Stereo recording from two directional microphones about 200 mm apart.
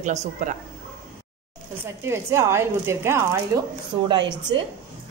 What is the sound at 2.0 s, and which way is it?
Speech, 15° right (ahead or behind).